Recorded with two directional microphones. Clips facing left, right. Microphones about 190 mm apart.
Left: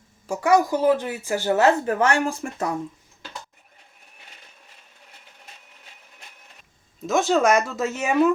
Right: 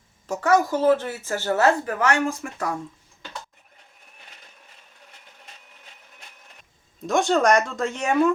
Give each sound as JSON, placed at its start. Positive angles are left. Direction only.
{"t": 0.3, "sound": "a woman's voice", "side_deg": 15}
{"t": 1.8, "sound": "speech", "side_deg": 30}
{"t": 7.0, "sound": "speech", "side_deg": 0}